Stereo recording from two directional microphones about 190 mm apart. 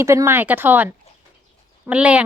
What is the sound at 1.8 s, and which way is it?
Speech, 5° right (ahead or behind).